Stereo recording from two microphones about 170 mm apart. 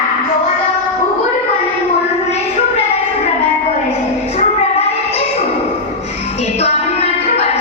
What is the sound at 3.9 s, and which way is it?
Music, 40° left (ahead or behind).